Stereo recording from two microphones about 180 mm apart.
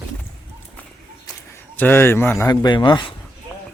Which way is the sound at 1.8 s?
10° left (ahead or behind).